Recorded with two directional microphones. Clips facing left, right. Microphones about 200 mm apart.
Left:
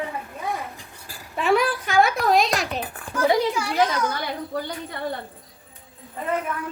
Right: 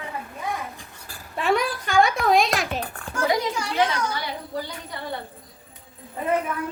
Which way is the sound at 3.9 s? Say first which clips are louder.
Left 2 dB; 55° left (ahead or behind).